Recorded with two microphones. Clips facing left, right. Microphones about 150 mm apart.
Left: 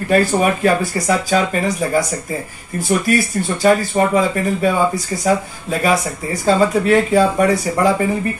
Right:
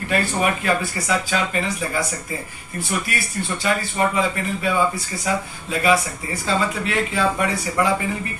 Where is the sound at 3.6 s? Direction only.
40° left (ahead or behind).